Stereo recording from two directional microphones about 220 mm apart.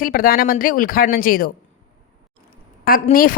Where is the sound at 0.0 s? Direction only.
40° left (ahead or behind).